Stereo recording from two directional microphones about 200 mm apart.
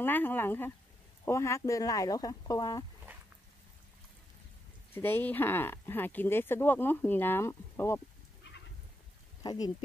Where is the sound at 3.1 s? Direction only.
10° right (ahead or behind).